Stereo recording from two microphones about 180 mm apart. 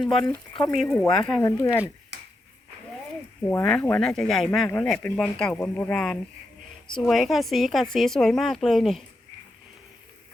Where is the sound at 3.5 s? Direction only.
10° left (ahead or behind).